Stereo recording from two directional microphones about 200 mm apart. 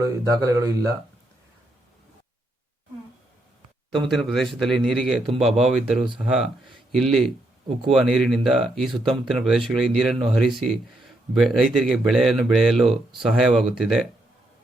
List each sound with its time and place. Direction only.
0.0 s speech: 15° right (ahead or behind)
4.1 s speech: centre (ahead or behind)
5.3 s speech: 30° right (ahead or behind)
6.1 s speech: centre (ahead or behind)